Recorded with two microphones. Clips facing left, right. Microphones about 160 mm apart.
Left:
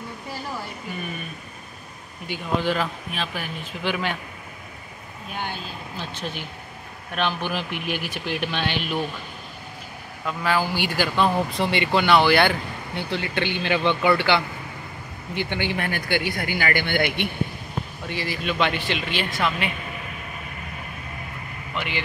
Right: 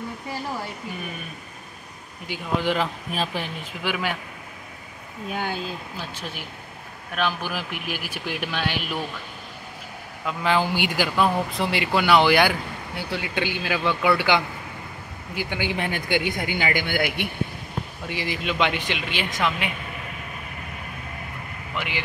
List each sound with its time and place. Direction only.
2.3 s speech: 15° right (ahead or behind)
3.1 s speech: 35° right (ahead or behind)
3.8 s speech: 10° right (ahead or behind)
5.9 s speech: 10° right (ahead or behind)
10.2 s speech: 20° right (ahead or behind)
21.7 s speech: 10° right (ahead or behind)